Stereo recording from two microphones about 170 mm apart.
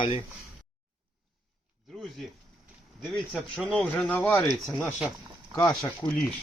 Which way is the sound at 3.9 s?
10° left (ahead or behind).